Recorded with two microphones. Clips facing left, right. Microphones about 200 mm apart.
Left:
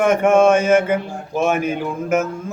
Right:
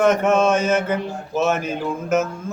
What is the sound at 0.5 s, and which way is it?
Mantra, 55° left (ahead or behind).